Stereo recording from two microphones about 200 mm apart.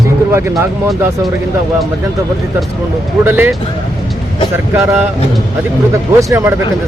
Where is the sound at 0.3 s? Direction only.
10° right (ahead or behind).